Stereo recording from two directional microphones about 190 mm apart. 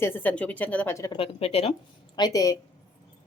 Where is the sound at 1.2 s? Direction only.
30° left (ahead or behind).